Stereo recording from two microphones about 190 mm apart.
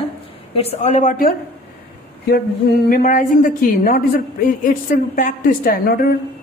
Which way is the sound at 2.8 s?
45° left (ahead or behind).